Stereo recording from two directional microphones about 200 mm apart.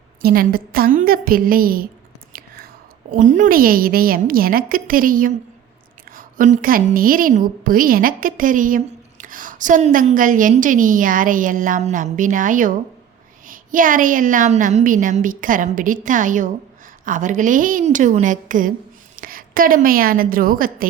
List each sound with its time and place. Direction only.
0.2 s a woman's voice: 50° right (ahead or behind)
3.1 s a woman's voice: 40° right (ahead or behind)